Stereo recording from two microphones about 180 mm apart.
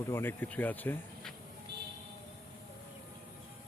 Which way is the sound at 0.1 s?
10° left (ahead or behind).